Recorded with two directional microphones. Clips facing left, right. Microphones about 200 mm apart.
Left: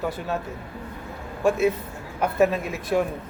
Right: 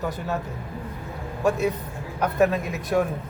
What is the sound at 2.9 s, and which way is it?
Speech, centre (ahead or behind).